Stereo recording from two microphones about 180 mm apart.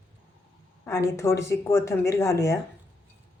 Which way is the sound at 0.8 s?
15° left (ahead or behind).